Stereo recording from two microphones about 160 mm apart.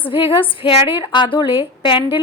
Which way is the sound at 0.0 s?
35° left (ahead or behind).